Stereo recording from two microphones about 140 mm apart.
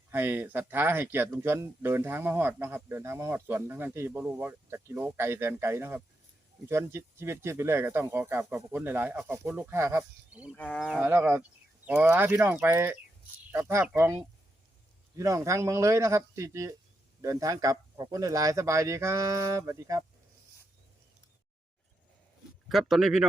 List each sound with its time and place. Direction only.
0.1 s speech: 15° right (ahead or behind)
10.5 s speech: 5° left (ahead or behind)
11.0 s speech: 15° right (ahead or behind)
22.7 s speech: centre (ahead or behind)